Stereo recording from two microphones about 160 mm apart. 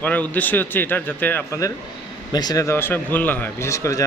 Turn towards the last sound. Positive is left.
turn(degrees=20)  # may be behind; listen again after turning